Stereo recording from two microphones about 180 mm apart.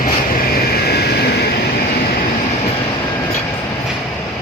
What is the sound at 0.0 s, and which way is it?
Vehicle, 55° left (ahead or behind).